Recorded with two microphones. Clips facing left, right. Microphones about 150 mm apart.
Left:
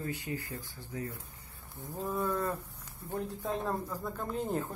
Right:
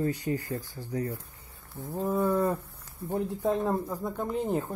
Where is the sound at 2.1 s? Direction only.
25° right (ahead or behind).